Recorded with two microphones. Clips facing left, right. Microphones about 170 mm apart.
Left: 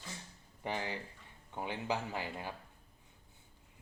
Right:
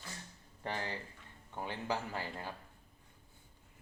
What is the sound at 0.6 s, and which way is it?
Speech, 15° left (ahead or behind).